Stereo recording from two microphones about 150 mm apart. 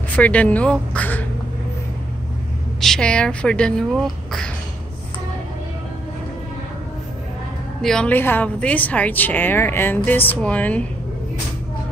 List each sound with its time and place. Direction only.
0.1 s speech: 10° left (ahead or behind)
2.8 s speech: 5° left (ahead or behind)
7.8 s speech: 5° left (ahead or behind)